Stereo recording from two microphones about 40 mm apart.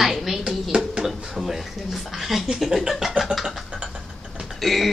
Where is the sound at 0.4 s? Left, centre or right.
Right.